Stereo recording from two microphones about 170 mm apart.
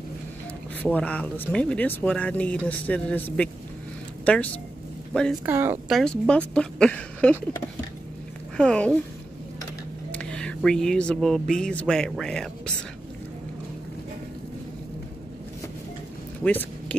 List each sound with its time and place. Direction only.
0.8 s a woman's voice: 5° left (ahead or behind)
5.4 s a woman's voice: 10° right (ahead or behind)
5.9 s speech: 5° left (ahead or behind)
8.5 s speech: 5° left (ahead or behind)
10.1 s speech: 5° left (ahead or behind)